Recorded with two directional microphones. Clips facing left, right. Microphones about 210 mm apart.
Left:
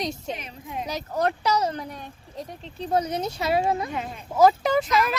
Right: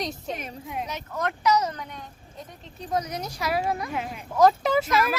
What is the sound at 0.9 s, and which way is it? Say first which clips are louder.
Speech: left 8 dB; 35° left (ahead or behind).